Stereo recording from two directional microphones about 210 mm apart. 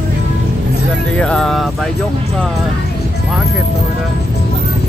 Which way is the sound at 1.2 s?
5° left (ahead or behind).